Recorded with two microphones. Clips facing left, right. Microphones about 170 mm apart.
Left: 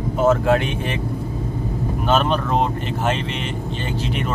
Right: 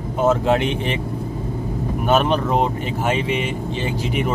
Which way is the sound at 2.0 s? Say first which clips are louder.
Right 2 dB; 10° right (ahead or behind).